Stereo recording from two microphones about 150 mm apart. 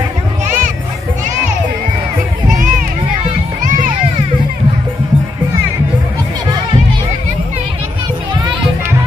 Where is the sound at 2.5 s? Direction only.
60° right (ahead or behind).